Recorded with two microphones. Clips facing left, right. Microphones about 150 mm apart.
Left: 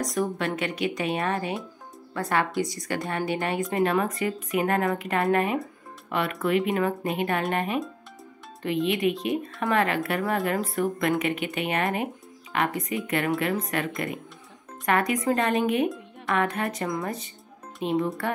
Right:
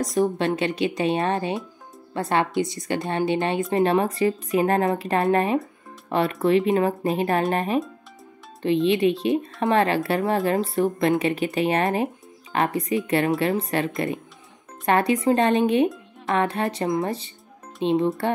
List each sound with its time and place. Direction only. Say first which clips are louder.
0.0 s speech: right 5 dB; 30° right (ahead or behind)